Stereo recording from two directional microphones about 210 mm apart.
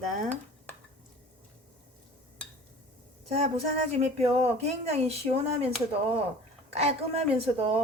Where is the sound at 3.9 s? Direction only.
30° right (ahead or behind).